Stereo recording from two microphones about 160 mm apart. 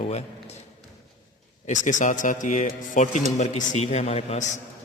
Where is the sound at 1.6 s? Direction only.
50° left (ahead or behind).